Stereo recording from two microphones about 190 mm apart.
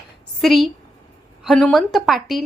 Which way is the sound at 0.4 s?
Centre (ahead or behind).